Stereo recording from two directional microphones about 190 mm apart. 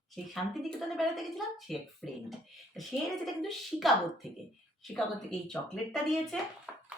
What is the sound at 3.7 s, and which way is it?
A woman's voice, centre (ahead or behind).